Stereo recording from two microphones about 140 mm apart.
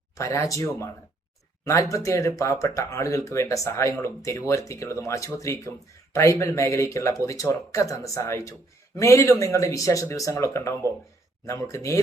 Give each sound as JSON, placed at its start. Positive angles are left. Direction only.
{"t": 0.2, "sound": "speech", "side_deg": 20}